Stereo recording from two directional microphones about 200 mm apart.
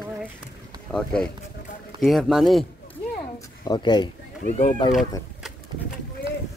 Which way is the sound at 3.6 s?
20° left (ahead or behind).